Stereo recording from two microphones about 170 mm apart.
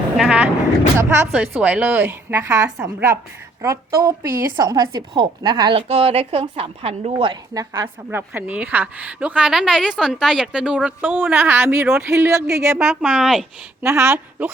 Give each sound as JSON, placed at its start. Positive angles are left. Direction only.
{"t": 0.2, "sound": "a woman's voice", "side_deg": -5}
{"t": 12.8, "sound": "speech", "side_deg": 0}
{"t": 13.8, "sound": "a woman's voice", "side_deg": -15}